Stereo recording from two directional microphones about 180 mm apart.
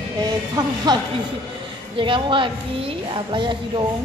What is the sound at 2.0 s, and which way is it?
Speech, 30° right (ahead or behind).